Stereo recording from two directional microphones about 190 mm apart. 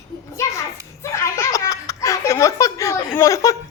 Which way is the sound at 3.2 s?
15° left (ahead or behind).